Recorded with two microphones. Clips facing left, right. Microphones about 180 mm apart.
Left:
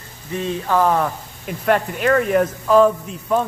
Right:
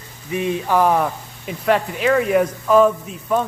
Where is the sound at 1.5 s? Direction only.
Centre (ahead or behind).